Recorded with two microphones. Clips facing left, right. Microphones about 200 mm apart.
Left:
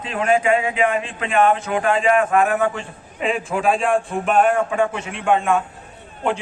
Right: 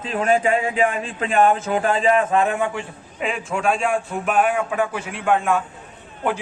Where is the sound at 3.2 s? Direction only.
Centre (ahead or behind).